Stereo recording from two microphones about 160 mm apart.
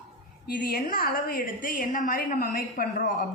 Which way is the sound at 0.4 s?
65° left (ahead or behind).